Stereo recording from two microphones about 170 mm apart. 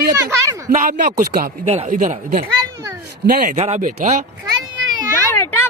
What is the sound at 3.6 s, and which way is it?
Speech, 40° right (ahead or behind).